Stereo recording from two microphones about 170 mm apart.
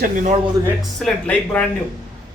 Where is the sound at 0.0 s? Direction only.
50° right (ahead or behind).